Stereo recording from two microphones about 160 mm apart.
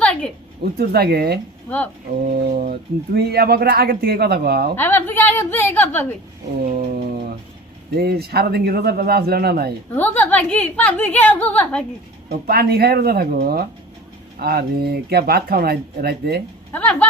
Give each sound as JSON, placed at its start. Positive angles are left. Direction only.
{"t": 0.0, "sound": "a sound", "side_deg": 10}
{"t": 0.6, "sound": "a man's voice", "side_deg": -80}
{"t": 2.2, "sound": "speech", "side_deg": -55}
{"t": 3.2, "sound": "a man's voice", "side_deg": -85}
{"t": 4.8, "sound": "a woman's voice", "side_deg": 15}
{"t": 6.7, "sound": "a sound", "side_deg": -60}
{"t": 7.9, "sound": "a man's voice", "side_deg": -80}
{"t": 9.9, "sound": "a woman's voice", "side_deg": 10}
{"t": 12.5, "sound": "a man's voice", "side_deg": -75}
{"t": 16.7, "sound": "a woman's voice", "side_deg": 10}